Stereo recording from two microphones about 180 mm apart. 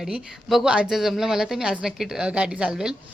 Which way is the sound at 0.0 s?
5° right (ahead or behind).